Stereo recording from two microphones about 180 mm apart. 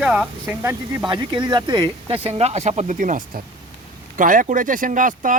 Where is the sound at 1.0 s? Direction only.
25° right (ahead or behind); by 3.2 s 45° right (ahead or behind).